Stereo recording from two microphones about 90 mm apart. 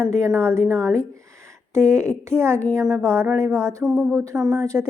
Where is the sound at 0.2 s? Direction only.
30° right (ahead or behind).